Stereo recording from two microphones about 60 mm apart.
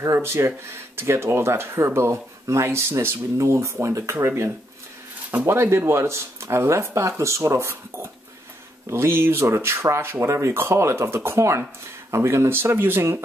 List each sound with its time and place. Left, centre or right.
0.0 s speech: right
3.3 s speech: right